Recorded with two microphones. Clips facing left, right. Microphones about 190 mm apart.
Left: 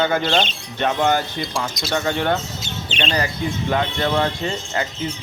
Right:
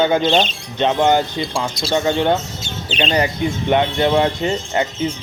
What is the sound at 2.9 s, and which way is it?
Speech, 35° right (ahead or behind).